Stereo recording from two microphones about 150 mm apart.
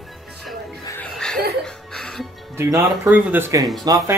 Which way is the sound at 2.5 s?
20° right (ahead or behind).